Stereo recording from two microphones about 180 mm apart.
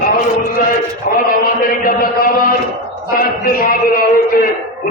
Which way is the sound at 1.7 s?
55° left (ahead or behind).